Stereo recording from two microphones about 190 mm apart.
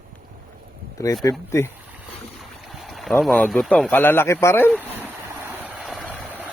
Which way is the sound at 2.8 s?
Centre (ahead or behind).